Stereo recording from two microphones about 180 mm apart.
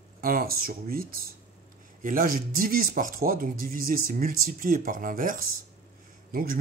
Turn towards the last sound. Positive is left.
turn(degrees=-55)  # may be behind; listen again after turning